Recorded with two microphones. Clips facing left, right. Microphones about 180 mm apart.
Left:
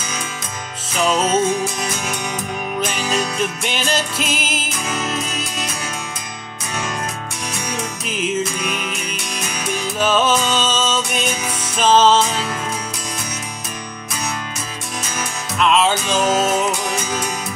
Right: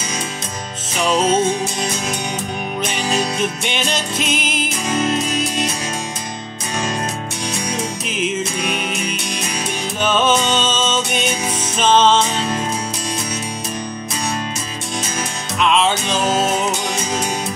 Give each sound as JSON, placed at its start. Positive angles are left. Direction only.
{"t": 1.2, "sound": "music", "side_deg": -30}
{"t": 3.6, "sound": "music", "side_deg": 5}
{"t": 4.8, "sound": "music", "side_deg": -30}
{"t": 9.9, "sound": "music", "side_deg": 5}
{"t": 11.8, "sound": "music", "side_deg": 5}
{"t": 15.6, "sound": "music", "side_deg": 5}